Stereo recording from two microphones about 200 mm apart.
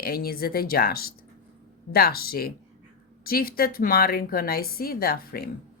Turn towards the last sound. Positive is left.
turn(degrees=50)  # may be behind; listen again after turning